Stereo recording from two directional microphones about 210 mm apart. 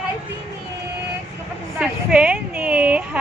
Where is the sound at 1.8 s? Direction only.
5° right (ahead or behind).